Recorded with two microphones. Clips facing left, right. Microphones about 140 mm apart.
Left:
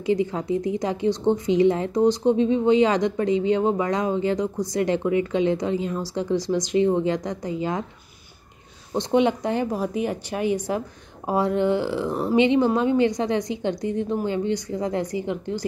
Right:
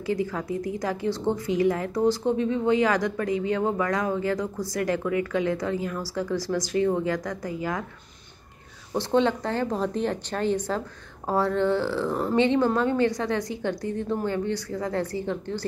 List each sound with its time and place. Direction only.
0.0 s a woman's voice: 20° left (ahead or behind)
8.9 s a woman's voice: 15° left (ahead or behind)